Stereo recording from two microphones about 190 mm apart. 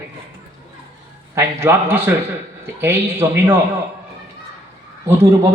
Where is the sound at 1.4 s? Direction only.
15° right (ahead or behind).